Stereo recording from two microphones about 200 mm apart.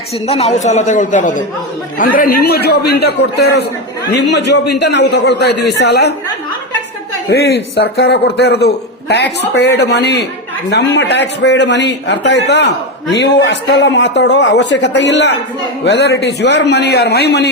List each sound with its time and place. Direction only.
0.1 s a man's voice: 30° left (ahead or behind); by 6.1 s 55° left (ahead or behind)
7.3 s a man's voice: 55° left (ahead or behind)